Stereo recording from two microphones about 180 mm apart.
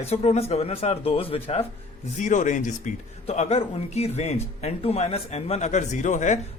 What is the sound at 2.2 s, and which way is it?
A man's voice, 45° left (ahead or behind).